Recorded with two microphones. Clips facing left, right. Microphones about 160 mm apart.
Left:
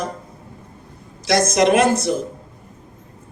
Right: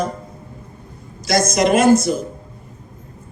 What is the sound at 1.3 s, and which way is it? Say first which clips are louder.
Speech: left 1 dB; 65° left (ahead or behind).